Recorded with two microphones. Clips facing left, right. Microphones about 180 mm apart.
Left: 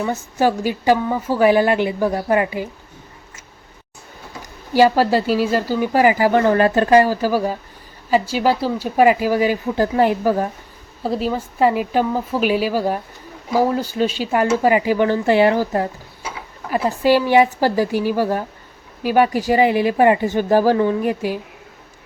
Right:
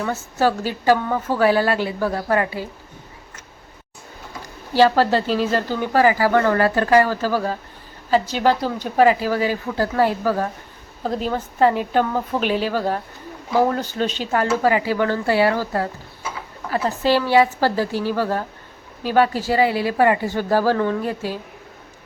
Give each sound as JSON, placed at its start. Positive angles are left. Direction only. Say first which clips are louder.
{"t": 0.0, "sound": "speech", "louder": "left 2 dB", "side_deg": 15}
{"t": 4.7, "sound": "speech", "louder": "left 2 dB", "side_deg": 10}
{"t": 11.0, "sound": "speech", "louder": "left 2 dB", "side_deg": 5}